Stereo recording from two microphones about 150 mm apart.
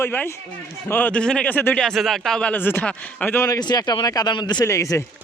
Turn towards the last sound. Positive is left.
turn(degrees=20)  # may be behind; listen again after turning